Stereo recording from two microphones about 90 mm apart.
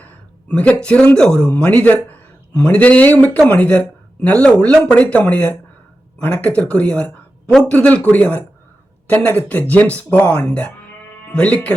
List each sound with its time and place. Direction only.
0.0 s a man's voice: 15° left (ahead or behind)